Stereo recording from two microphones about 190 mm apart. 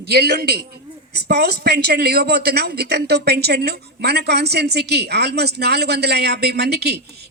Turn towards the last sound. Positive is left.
turn(degrees=-60)  # may be behind; listen again after turning